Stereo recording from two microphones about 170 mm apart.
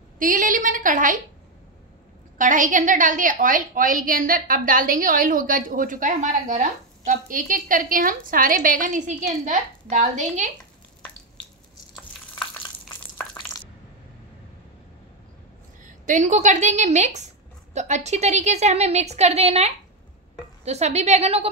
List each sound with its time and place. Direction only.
0.2 s a woman's voice: 50° right (ahead or behind)
2.3 s a woman's voice: 50° right (ahead or behind)
15.8 s a woman's voice: 50° right (ahead or behind)